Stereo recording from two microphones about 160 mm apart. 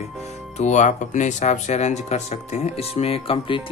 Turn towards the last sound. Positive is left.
turn(degrees=35)  # may be behind; listen again after turning